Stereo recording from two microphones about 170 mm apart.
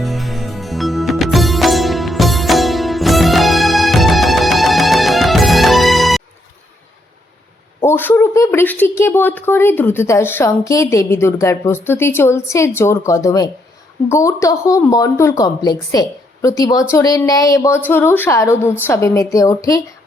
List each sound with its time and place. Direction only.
0.0 s music: centre (ahead or behind)
7.8 s a woman's voice: 10° left (ahead or behind)